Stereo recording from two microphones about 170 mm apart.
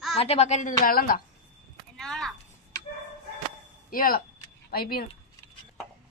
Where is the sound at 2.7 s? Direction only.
20° left (ahead or behind).